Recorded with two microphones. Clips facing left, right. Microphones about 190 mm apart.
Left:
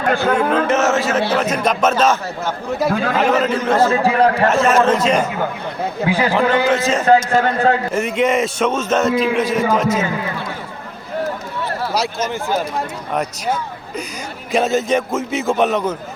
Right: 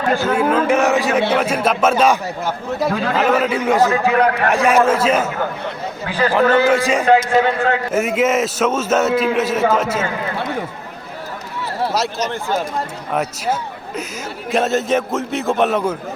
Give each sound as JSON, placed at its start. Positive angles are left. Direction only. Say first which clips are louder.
{"t": 0.1, "sound": "a man's voice", "louder": "left 1 dB", "side_deg": 55}
{"t": 0.3, "sound": "a man's voice", "louder": "right 1 dB", "side_deg": -10}
{"t": 4.0, "sound": "a man's voice", "louder": "left 1 dB", "side_deg": 30}
{"t": 4.5, "sound": "a man's voice", "louder": "even", "side_deg": -10}
{"t": 6.1, "sound": "speech", "louder": "left 1 dB", "side_deg": 10}
{"t": 6.7, "sound": "a man's voice", "louder": "right 1 dB", "side_deg": -10}
{"t": 7.1, "sound": "a man's voice", "louder": "even", "side_deg": 45}
{"t": 7.9, "sound": "a man's voice", "louder": "even", "side_deg": -5}
{"t": 11.9, "sound": "a man's voice", "louder": "even", "side_deg": 0}